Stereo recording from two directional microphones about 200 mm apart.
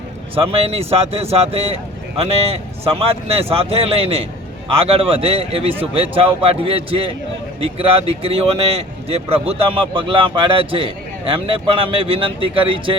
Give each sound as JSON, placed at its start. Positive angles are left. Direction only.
{"t": 0.3, "sound": "a man's voice", "side_deg": -30}